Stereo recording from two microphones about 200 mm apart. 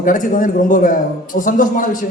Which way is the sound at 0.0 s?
40° left (ahead or behind).